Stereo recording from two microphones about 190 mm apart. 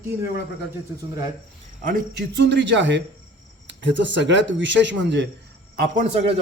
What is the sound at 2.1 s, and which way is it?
Speech, 65° right (ahead or behind).